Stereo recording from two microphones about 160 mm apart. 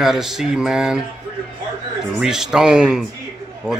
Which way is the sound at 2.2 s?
5° right (ahead or behind).